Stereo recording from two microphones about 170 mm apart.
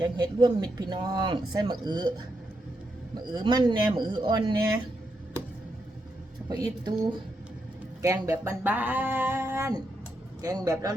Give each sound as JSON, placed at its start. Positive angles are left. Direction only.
{"t": 0.0, "sound": "speech", "side_deg": -25}
{"t": 3.2, "sound": "speech", "side_deg": -25}
{"t": 6.5, "sound": "speech", "side_deg": -25}
{"t": 8.0, "sound": "speech", "side_deg": -20}